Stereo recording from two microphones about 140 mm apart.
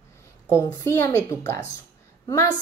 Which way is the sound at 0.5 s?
20° left (ahead or behind).